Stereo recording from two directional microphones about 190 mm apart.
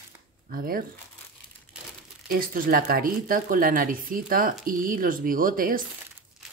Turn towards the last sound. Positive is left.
turn(degrees=-45)  # may be behind; listen again after turning